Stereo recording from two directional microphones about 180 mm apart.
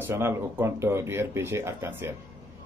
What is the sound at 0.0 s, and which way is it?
Speech, 15° right (ahead or behind).